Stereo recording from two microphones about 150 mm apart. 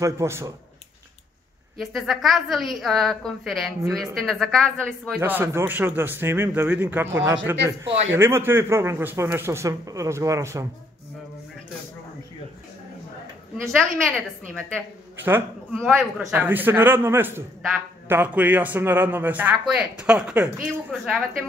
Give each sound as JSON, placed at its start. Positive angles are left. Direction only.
{"t": 0.0, "sound": "a man's voice", "side_deg": -20}
{"t": 1.8, "sound": "a woman's voice", "side_deg": 0}
{"t": 5.2, "sound": "a man's voice", "side_deg": -15}
{"t": 13.7, "sound": "a woman's voice", "side_deg": 5}
{"t": 16.0, "sound": "a woman's voice", "side_deg": 0}
{"t": 16.3, "sound": "a man's voice", "side_deg": -10}